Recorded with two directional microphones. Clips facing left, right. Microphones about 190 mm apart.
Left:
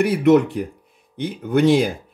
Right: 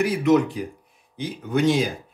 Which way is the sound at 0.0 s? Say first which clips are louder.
Left 4 dB; 60° left (ahead or behind).